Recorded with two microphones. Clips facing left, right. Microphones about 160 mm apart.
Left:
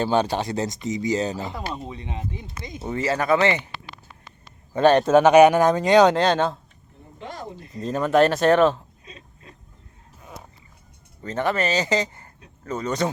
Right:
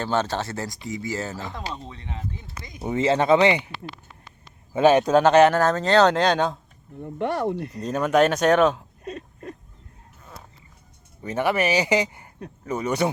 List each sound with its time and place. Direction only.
0.0 s speech: 15° left (ahead or behind)
2.8 s speech: 20° right (ahead or behind)
4.7 s speech: 5° right (ahead or behind)
7.0 s speech: 65° right (ahead or behind)
7.8 s speech: centre (ahead or behind)
9.0 s a sound: 60° right (ahead or behind)
11.2 s speech: 10° right (ahead or behind)